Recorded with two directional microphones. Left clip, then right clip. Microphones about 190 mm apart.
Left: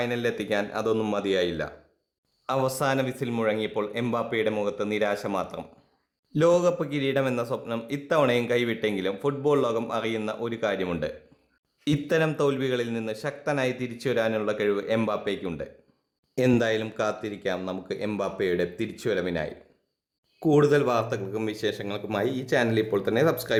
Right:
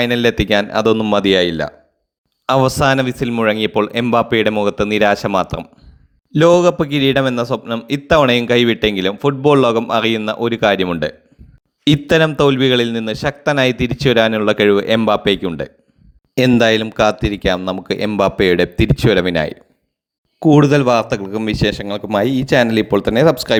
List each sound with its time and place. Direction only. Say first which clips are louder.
0.0 s a man's voice: right 12 dB; 35° right (ahead or behind)
11.9 s a man's voice: right 12 dB; 35° right (ahead or behind)
20.4 s a man's voice: right 9 dB; 30° right (ahead or behind)